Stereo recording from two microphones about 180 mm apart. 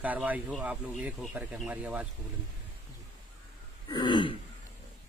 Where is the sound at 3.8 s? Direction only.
25° left (ahead or behind).